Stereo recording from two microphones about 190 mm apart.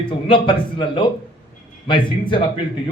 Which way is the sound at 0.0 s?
25° left (ahead or behind).